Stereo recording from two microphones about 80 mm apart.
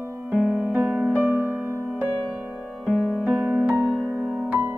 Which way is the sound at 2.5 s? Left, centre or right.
Centre.